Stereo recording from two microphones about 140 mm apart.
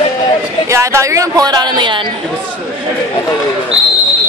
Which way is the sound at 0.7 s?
20° right (ahead or behind).